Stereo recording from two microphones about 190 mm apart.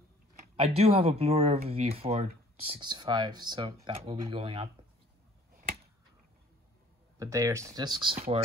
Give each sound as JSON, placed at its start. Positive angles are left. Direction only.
{"t": 0.6, "sound": "speech", "side_deg": -30}
{"t": 7.2, "sound": "speech", "side_deg": -15}